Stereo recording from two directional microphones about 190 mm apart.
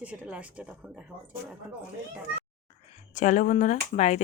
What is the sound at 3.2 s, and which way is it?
Speech, 40° left (ahead or behind).